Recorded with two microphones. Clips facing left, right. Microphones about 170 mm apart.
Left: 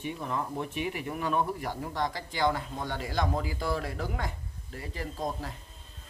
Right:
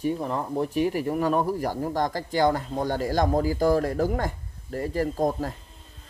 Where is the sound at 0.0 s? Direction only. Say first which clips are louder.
Right 7 dB; 35° right (ahead or behind).